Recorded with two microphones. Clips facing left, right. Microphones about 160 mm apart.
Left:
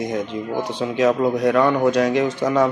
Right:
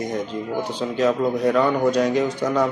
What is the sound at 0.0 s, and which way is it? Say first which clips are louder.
A man's voice: left 2 dB; centre (ahead or behind).